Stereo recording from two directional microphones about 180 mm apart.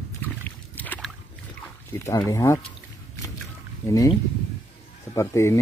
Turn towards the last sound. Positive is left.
turn(degrees=15)  # may be behind; listen again after turning